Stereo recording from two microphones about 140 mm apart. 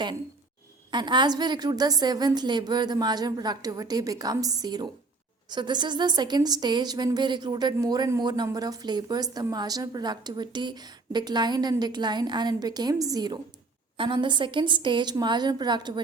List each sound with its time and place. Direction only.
0.9 s a woman's voice: 35° right (ahead or behind)